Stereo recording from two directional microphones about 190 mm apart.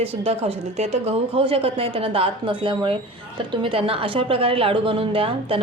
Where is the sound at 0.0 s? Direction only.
30° right (ahead or behind).